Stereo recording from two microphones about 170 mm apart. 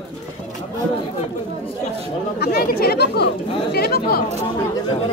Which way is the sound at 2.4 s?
65° left (ahead or behind).